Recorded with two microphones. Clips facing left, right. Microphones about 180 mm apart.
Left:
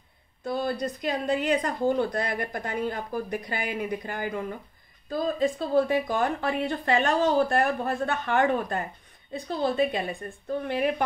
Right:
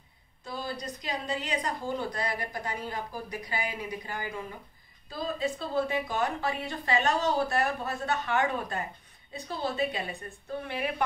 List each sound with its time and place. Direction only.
0.5 s a woman's voice: 55° left (ahead or behind)